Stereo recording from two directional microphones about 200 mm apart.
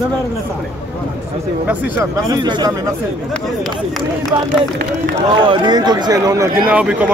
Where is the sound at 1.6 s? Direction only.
5° right (ahead or behind).